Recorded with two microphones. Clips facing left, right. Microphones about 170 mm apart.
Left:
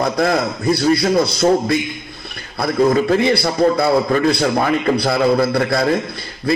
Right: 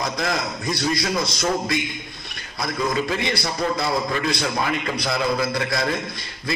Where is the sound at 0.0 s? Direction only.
55° left (ahead or behind).